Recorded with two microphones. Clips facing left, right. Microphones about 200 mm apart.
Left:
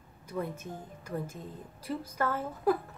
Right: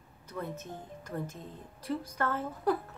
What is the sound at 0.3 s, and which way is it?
A woman's voice, 10° left (ahead or behind).